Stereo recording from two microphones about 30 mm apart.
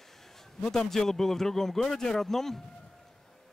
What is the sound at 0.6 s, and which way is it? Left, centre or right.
Speech, left.